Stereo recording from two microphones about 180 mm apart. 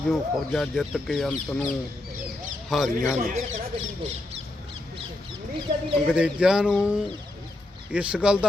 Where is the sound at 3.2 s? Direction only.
45° right (ahead or behind).